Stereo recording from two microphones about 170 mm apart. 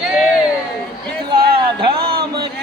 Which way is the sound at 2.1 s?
65° right (ahead or behind).